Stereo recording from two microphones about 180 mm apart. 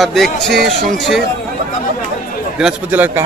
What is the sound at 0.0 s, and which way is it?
A man's voice, centre (ahead or behind).